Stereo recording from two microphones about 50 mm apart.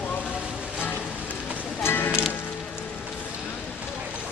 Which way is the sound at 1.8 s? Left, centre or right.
Left.